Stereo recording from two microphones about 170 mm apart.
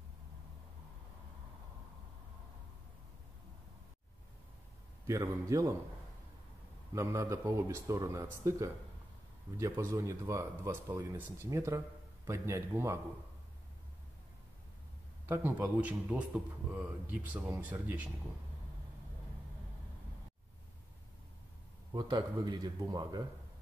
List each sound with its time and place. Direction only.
5.0 s a man's voice: 20° right (ahead or behind)
6.9 s a man's voice: 15° right (ahead or behind)
15.2 s a man's voice: 15° right (ahead or behind)
21.9 s a man's voice: 25° right (ahead or behind)